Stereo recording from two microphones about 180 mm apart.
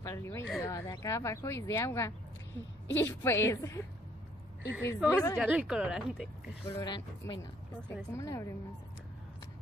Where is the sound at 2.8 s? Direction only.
90° left.